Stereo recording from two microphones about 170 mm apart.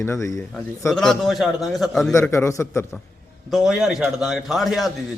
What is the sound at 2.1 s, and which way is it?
Speech, 15° left (ahead or behind).